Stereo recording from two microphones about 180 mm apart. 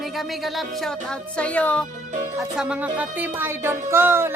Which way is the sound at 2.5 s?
5° right (ahead or behind).